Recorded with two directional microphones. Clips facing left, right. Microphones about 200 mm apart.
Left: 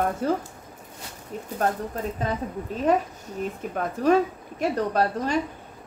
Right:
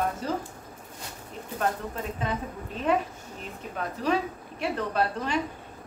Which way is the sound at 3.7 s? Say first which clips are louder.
Left 6 dB; 45° left (ahead or behind).